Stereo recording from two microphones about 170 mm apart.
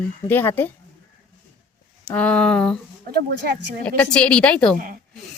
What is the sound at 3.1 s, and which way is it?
Speech, 75° right (ahead or behind).